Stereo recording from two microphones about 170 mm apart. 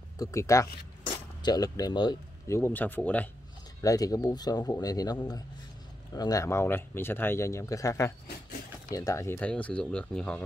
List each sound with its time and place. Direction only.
0.2 s speech: 20° left (ahead or behind)
3.8 s speech: 20° left (ahead or behind)